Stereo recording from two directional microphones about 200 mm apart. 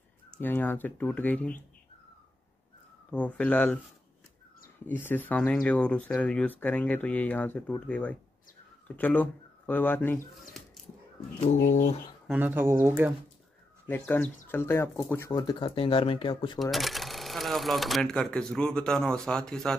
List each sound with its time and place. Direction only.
0.4 s speech: 10° left (ahead or behind)
3.1 s speech: 5° left (ahead or behind)
4.8 s speech: 10° left (ahead or behind)
11.4 s speech: 35° left (ahead or behind)
12.3 s speech: 10° right (ahead or behind)
13.8 s speech: 10° left (ahead or behind)
16.7 s speech: centre (ahead or behind)